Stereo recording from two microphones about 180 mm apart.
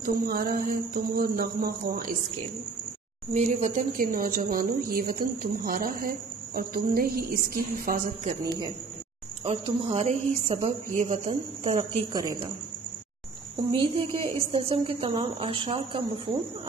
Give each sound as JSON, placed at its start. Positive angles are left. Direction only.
{"t": 0.0, "sound": "speech", "side_deg": -55}
{"t": 3.3, "sound": "speech", "side_deg": -40}
{"t": 9.4, "sound": "speech", "side_deg": -30}
{"t": 10.0, "sound": "speech", "side_deg": -40}
{"t": 12.1, "sound": "speech", "side_deg": -20}
{"t": 13.6, "sound": "speech", "side_deg": -25}